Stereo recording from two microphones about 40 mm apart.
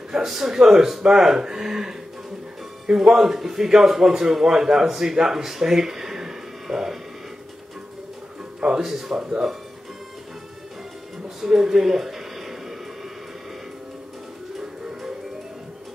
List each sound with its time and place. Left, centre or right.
0.1 s a man's voice: centre
8.5 s speech: right
8.8 s a man's voice: centre
11.2 s a sound: centre
14.6 s music: centre